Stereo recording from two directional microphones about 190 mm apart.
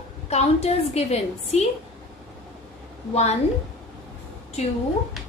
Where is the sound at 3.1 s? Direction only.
35° left (ahead or behind).